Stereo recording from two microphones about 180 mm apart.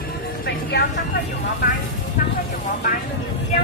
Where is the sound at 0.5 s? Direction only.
65° left (ahead or behind).